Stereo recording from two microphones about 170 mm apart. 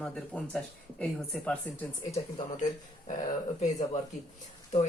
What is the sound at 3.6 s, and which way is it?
Speech, 40° left (ahead or behind).